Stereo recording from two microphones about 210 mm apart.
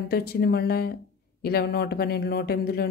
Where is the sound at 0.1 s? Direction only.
50° left (ahead or behind).